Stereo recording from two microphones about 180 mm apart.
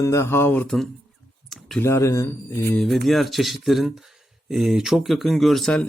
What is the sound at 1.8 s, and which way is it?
Speech, 15° left (ahead or behind).